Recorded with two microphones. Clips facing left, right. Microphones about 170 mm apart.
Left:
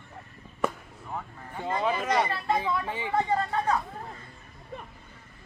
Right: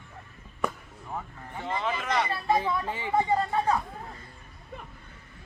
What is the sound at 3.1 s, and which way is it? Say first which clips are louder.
Speech: right 2 dB; 15° right (ahead or behind).